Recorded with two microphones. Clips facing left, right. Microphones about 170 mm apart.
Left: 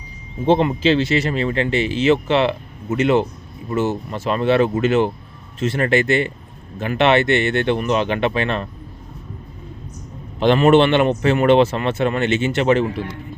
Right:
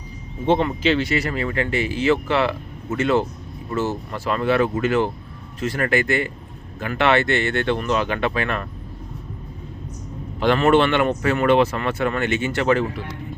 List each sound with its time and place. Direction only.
0.4 s speech: 30° left (ahead or behind)
10.4 s speech: 20° left (ahead or behind)